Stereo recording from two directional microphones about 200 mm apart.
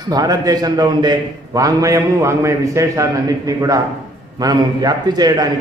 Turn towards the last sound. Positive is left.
turn(degrees=-20)  # may be behind; listen again after turning